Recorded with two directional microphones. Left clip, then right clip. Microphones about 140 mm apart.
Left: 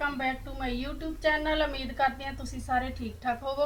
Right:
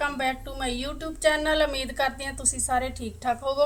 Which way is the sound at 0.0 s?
45° right (ahead or behind).